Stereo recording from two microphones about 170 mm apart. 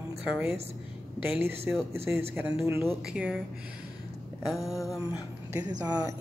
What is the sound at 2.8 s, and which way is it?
Music, 5° right (ahead or behind).